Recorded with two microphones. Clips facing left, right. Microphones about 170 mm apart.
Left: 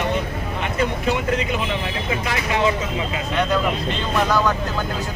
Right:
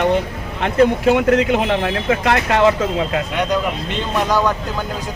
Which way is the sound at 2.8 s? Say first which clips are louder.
Right 6 dB; 70° right (ahead or behind).